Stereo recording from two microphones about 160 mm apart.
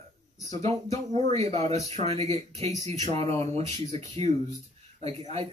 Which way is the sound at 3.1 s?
40° right (ahead or behind).